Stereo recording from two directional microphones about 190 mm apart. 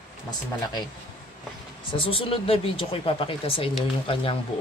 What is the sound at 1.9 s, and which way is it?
Speech, 30° left (ahead or behind).